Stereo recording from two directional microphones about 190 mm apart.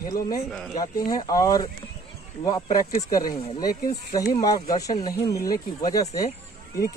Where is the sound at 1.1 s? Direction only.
20° left (ahead or behind).